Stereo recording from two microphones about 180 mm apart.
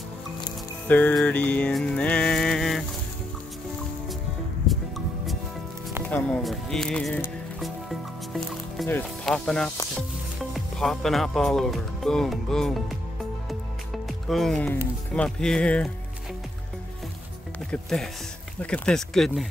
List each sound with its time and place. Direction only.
0.8 s music: 10° left (ahead or behind)
4.6 s music: centre (ahead or behind)
9.9 s speech: centre (ahead or behind)
14.0 s speech: centre (ahead or behind)
15.1 s music: 5° left (ahead or behind)
17.6 s speech: centre (ahead or behind)
18.6 s music: 5° left (ahead or behind)